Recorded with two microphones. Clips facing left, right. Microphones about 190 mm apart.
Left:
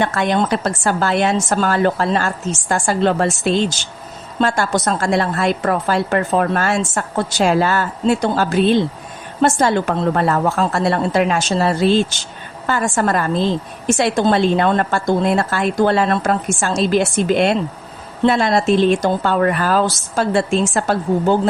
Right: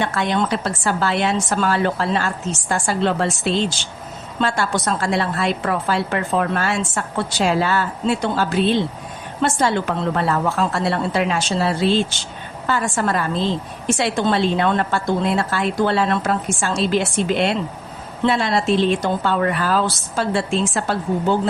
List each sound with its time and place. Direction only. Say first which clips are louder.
0.0 s a woman's voice: left 3 dB; 50° left (ahead or behind)